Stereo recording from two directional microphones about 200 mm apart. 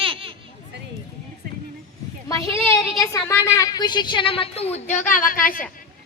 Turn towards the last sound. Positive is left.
turn(degrees=45)  # may be behind; listen again after turning